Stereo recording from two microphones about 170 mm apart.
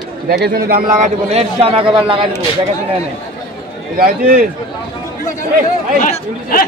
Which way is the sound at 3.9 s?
60° right (ahead or behind).